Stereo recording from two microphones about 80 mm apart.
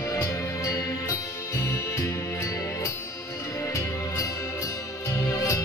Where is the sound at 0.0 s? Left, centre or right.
Left.